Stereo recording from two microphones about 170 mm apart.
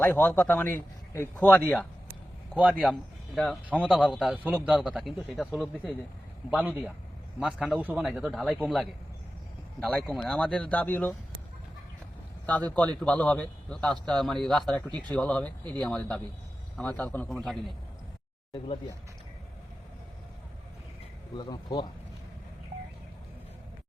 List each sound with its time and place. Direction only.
0.0 s a man's voice: 10° left (ahead or behind)
2.6 s a man's voice: 5° right (ahead or behind)
6.5 s a man's voice: 10° right (ahead or behind)
8.6 s a man's voice: 5° right (ahead or behind)
12.5 s a man's voice: 10° left (ahead or behind)
21.3 s speech: 25° left (ahead or behind)